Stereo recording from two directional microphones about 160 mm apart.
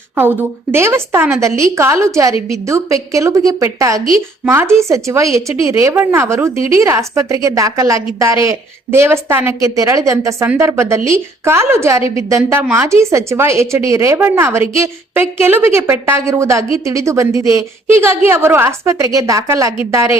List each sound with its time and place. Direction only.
0.2 s a woman's voice: 15° right (ahead or behind)